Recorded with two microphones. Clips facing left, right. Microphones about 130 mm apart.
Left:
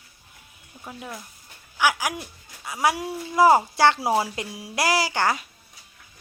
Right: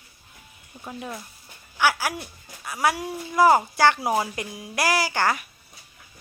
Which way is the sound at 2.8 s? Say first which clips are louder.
Left 1 dB; 25° left (ahead or behind).